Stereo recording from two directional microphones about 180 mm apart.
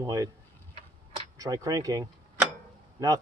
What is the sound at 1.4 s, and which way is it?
Speech, 20° right (ahead or behind).